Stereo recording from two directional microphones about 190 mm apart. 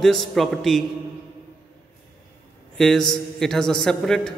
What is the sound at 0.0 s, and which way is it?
Speech, centre (ahead or behind).